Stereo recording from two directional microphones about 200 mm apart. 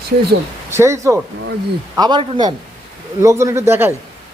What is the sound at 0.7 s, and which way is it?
A man's voice, 15° right (ahead or behind).